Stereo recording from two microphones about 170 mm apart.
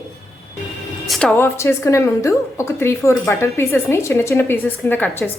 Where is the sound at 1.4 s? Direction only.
15° left (ahead or behind).